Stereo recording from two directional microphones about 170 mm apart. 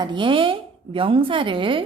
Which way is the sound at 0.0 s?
30° right (ahead or behind).